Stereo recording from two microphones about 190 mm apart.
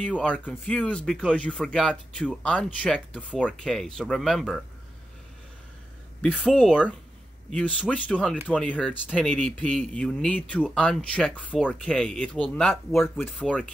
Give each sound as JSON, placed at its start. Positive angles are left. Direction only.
{"t": 0.1, "sound": "speech", "side_deg": 5}
{"t": 6.4, "sound": "speech", "side_deg": 0}